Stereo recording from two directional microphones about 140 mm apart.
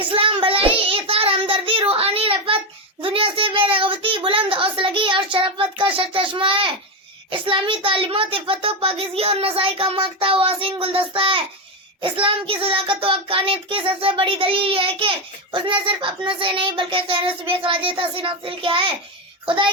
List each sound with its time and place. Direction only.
0.0 s child singing: 40° right (ahead or behind)
3.0 s a child's voice: 40° right (ahead or behind)